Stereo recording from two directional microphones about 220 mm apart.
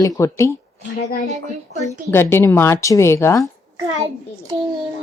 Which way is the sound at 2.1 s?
10° left (ahead or behind).